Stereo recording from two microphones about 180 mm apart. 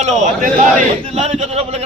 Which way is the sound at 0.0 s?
40° right (ahead or behind).